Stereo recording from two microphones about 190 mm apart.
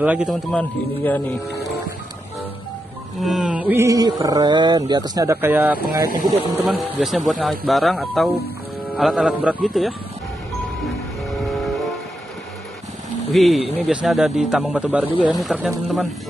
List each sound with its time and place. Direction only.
0.0 s speech: 5° right (ahead or behind)
3.2 s mantra: centre (ahead or behind); by 4.1 s 15° right (ahead or behind)
4.2 s speech: 20° right (ahead or behind); by 9.9 s centre (ahead or behind)
13.3 s speech: centre (ahead or behind)